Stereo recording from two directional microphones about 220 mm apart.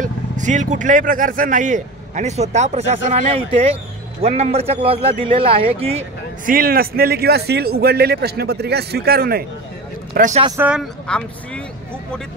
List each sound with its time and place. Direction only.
0.0 s a man's voice: 35° right (ahead or behind)
6.5 s a man's voice: 40° right (ahead or behind)
10.4 s speech: 15° right (ahead or behind)
10.7 s speech: centre (ahead or behind)